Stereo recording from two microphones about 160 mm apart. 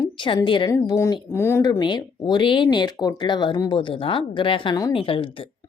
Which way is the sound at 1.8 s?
30° left (ahead or behind).